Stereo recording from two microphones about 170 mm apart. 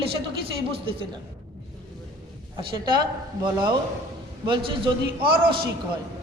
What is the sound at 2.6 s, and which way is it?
Speech, 30° right (ahead or behind).